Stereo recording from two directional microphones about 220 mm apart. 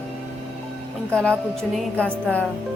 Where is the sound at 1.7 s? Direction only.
5° left (ahead or behind).